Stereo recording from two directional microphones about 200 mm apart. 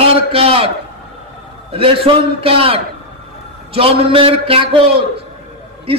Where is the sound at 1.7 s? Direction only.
25° right (ahead or behind).